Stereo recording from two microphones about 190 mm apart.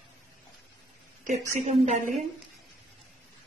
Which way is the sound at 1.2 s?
40° right (ahead or behind).